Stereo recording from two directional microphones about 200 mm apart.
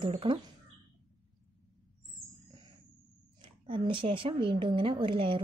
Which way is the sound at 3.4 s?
25° right (ahead or behind).